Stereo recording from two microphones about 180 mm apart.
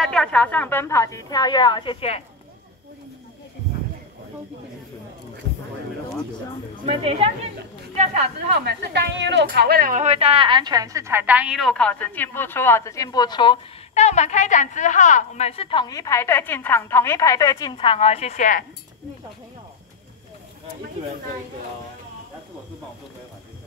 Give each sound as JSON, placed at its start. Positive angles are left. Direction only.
{"t": 0.0, "sound": "a woman's voice", "side_deg": 5}
{"t": 6.9, "sound": "a woman's voice", "side_deg": -35}
{"t": 8.5, "sound": "speech", "side_deg": -65}
{"t": 13.9, "sound": "a woman's voice", "side_deg": 40}